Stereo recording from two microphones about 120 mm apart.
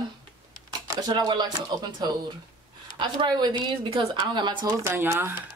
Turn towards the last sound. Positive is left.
turn(degrees=-20)  # may be behind; listen again after turning